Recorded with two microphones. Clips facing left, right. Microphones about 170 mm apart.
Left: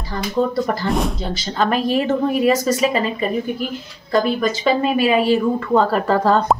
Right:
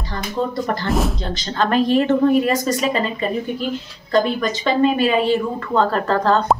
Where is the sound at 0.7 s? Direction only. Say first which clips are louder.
Even; centre (ahead or behind).